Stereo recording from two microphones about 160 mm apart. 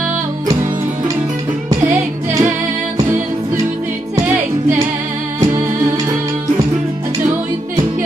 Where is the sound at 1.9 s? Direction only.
15° right (ahead or behind).